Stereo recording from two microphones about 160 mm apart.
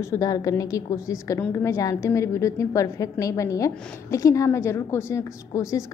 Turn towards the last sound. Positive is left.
turn(degrees=20)  # may be behind; listen again after turning